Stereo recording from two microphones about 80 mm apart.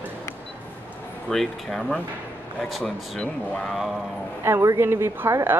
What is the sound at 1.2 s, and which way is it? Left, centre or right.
Speech, centre.